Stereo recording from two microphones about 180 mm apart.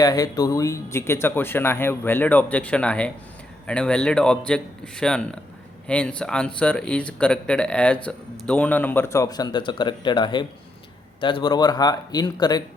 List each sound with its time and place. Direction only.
0.0 s a man's voice: 20° left (ahead or behind)